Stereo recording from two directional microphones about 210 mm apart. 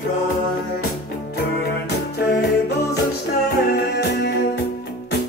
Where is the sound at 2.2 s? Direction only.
50° left (ahead or behind).